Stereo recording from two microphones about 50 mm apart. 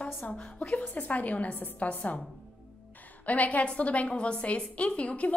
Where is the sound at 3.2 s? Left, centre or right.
Left.